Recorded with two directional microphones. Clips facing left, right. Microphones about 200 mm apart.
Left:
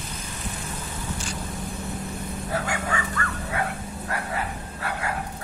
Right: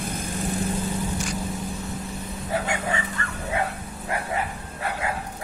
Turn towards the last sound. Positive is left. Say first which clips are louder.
# right 1 dB
turn(degrees=-25)  # may be behind; listen again after turning